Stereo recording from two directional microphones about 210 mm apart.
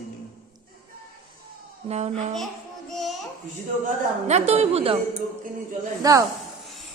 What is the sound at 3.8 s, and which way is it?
A woman's voice, 30° right (ahead or behind).